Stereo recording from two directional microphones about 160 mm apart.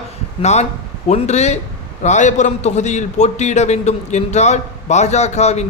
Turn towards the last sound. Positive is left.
turn(degrees=45)  # may be behind; listen again after turning